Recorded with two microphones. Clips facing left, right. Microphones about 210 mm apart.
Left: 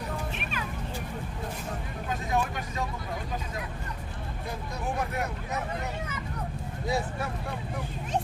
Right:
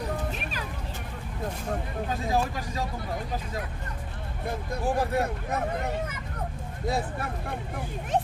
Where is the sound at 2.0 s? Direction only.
35° right (ahead or behind).